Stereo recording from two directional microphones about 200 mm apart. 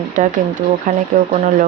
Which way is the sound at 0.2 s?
40° right (ahead or behind).